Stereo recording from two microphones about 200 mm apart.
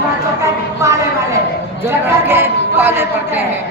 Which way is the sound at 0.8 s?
15° right (ahead or behind).